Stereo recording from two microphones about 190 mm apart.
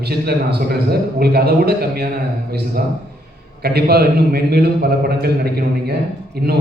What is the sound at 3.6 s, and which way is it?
A man's voice, 55° right (ahead or behind).